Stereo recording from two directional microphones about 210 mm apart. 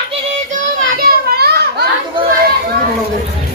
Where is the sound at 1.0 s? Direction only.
50° right (ahead or behind).